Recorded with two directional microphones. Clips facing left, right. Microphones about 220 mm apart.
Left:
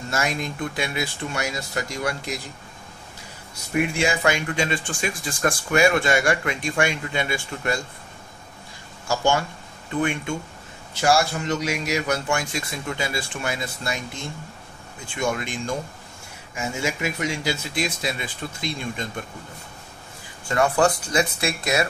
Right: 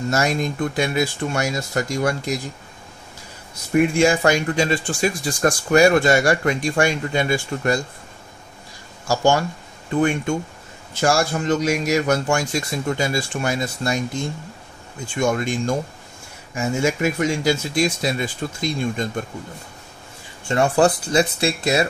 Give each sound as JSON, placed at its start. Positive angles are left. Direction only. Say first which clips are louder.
{"t": 0.1, "sound": "a man's voice", "louder": "right 4 dB", "side_deg": -40}
{"t": 3.7, "sound": "speech", "louder": "right 7 dB", "side_deg": -45}
{"t": 9.0, "sound": "speech", "louder": "right 4 dB", "side_deg": -40}
{"t": 11.0, "sound": "a man's voice", "louder": "right 1 dB", "side_deg": -50}
{"t": 15.1, "sound": "a man's voice", "louder": "right 5 dB", "side_deg": -45}
{"t": 20.4, "sound": "speech", "louder": "right 3 dB", "side_deg": -30}